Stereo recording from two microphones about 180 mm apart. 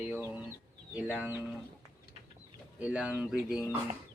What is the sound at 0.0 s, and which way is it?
Chicken, 10° right (ahead or behind).